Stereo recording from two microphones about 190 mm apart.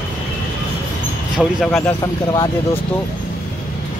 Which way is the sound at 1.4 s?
5° left (ahead or behind).